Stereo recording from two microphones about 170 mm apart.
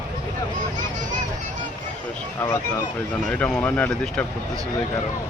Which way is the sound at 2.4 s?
15° left (ahead or behind).